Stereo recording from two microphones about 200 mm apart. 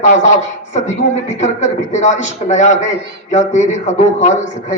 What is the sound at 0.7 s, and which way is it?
A man's voice, 35° left (ahead or behind).